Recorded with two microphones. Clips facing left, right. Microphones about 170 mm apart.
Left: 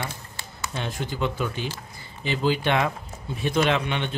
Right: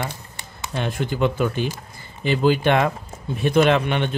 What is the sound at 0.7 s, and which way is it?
A man's voice, 55° right (ahead or behind).